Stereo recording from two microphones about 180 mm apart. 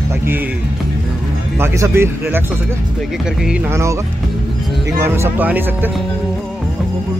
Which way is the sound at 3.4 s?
10° right (ahead or behind).